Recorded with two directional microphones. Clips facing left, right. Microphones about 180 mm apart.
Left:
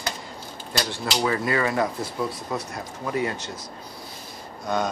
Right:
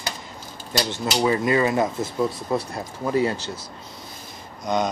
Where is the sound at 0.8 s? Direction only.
20° right (ahead or behind).